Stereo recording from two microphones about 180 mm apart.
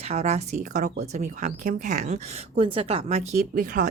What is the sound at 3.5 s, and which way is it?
Speech, 50° right (ahead or behind).